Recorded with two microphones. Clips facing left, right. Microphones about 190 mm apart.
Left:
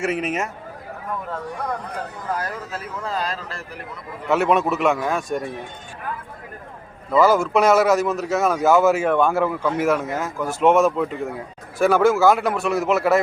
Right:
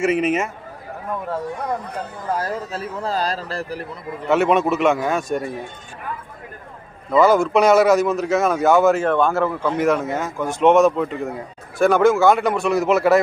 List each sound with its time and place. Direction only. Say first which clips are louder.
0.0 s a man's voice: right 5 dB; centre (ahead or behind)
2.4 s speech: right 4 dB; 30° right (ahead or behind)
4.3 s a man's voice: right 2 dB; centre (ahead or behind)
7.1 s a man's voice: right 2 dB; 5° left (ahead or behind)